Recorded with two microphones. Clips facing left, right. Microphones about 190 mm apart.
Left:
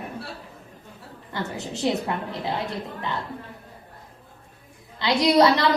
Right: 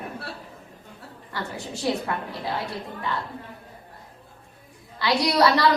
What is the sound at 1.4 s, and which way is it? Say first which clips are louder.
Speech: left 3 dB; 20° left (ahead or behind).